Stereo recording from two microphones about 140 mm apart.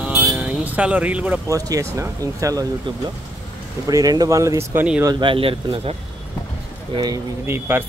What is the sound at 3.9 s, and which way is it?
Speech, 25° right (ahead or behind).